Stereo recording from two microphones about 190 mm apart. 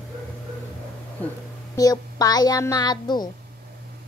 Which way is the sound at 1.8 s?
20° left (ahead or behind).